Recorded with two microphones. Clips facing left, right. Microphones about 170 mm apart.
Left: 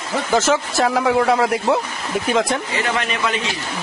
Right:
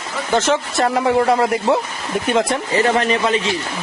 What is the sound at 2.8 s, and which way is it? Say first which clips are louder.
Speech: right 6 dB; 30° right (ahead or behind).